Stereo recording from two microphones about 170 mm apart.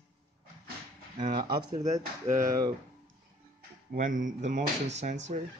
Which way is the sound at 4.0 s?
50° right (ahead or behind).